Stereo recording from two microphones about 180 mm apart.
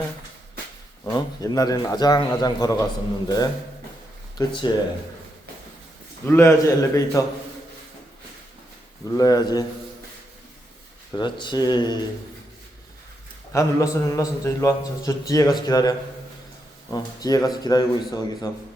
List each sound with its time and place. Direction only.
1.0 s a man's voice: 20° left (ahead or behind)
6.2 s a man's voice: 15° left (ahead or behind)
9.0 s a man's voice: 20° left (ahead or behind)
11.1 s a man's voice: 25° left (ahead or behind)
13.5 s a man's voice: 15° left (ahead or behind)